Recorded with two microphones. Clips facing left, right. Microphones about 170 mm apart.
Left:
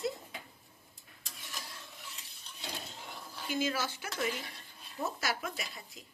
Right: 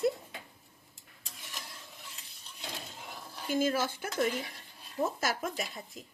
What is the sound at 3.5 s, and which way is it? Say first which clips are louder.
A woman's voice: right 4 dB; 50° right (ahead or behind).